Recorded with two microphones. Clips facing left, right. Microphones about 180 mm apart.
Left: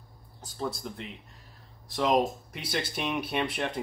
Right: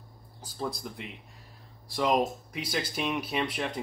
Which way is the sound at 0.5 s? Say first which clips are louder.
Left 1 dB; centre (ahead or behind).